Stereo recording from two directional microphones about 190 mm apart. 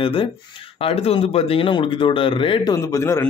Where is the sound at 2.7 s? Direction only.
15° left (ahead or behind).